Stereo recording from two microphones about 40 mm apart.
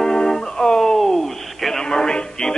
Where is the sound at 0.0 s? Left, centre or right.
Centre.